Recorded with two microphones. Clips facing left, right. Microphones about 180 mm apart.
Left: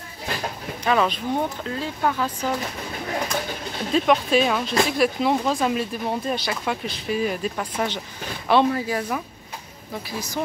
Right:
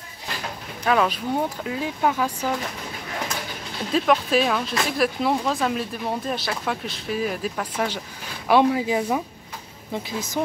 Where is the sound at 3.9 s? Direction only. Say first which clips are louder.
Left 1 dB; centre (ahead or behind).